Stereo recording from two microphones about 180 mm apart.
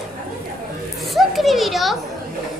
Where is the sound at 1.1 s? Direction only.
Centre (ahead or behind).